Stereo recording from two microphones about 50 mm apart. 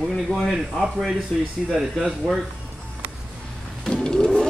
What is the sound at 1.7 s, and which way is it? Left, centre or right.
Speech, centre.